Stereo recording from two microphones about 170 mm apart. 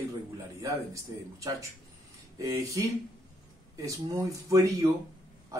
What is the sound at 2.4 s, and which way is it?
Speech, 20° right (ahead or behind).